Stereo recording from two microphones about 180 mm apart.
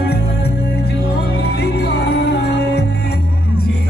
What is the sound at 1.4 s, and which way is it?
Music, 65° left (ahead or behind).